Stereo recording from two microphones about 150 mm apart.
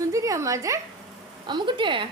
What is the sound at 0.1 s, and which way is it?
A woman's voice, 20° right (ahead or behind).